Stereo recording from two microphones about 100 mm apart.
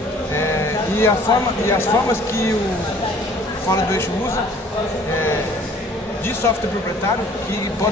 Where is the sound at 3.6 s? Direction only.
30° left (ahead or behind).